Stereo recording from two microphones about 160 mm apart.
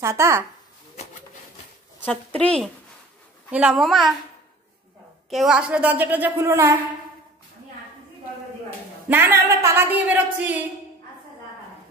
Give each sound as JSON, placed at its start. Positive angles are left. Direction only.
{"t": 0.0, "sound": "speech", "side_deg": -15}
{"t": 2.0, "sound": "a woman's voice", "side_deg": 10}
{"t": 5.3, "sound": "speech", "side_deg": -5}
{"t": 9.1, "sound": "speech", "side_deg": -15}